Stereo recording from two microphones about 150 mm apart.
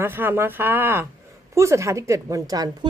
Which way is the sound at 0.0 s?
15° right (ahead or behind).